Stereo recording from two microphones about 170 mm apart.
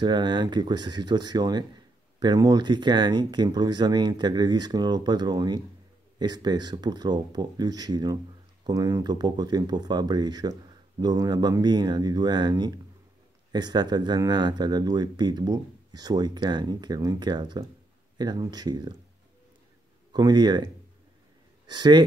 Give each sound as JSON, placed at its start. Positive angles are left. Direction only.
{"t": 0.0, "sound": "speech", "side_deg": -25}
{"t": 20.1, "sound": "speech", "side_deg": -25}